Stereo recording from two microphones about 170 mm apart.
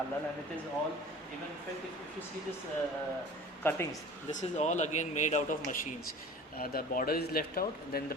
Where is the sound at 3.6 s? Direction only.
10° left (ahead or behind).